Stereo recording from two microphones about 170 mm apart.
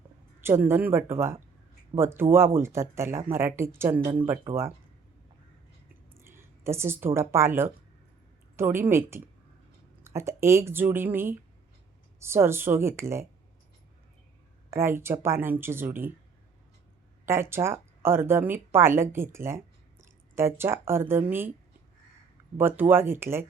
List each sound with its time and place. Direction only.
0.4 s speech: 15° right (ahead or behind)
6.1 s speech: 15° right (ahead or behind)
14.7 s speech: 15° right (ahead or behind)
17.2 s speech: 15° right (ahead or behind)
22.5 s speech: 10° right (ahead or behind)